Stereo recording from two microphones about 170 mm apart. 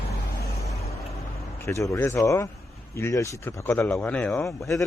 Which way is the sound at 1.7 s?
15° left (ahead or behind).